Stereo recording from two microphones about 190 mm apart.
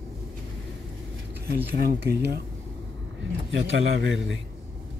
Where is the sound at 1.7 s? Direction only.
55° right (ahead or behind).